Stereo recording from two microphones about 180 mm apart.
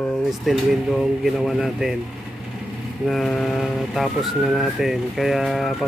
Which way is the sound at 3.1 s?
Centre (ahead or behind).